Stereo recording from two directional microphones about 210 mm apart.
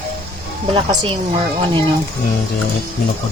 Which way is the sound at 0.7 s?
25° right (ahead or behind).